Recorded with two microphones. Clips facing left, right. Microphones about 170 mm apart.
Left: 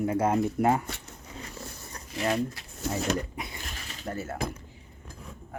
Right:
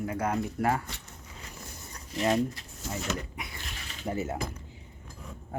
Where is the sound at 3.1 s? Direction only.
35° left (ahead or behind).